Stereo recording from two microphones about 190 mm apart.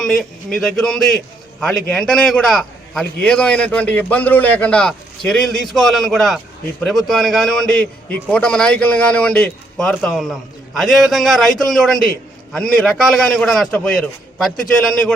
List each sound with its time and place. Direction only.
0.0 s a man's voice: centre (ahead or behind)